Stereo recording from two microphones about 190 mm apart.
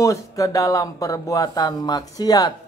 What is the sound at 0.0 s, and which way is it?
Speech, 15° left (ahead or behind).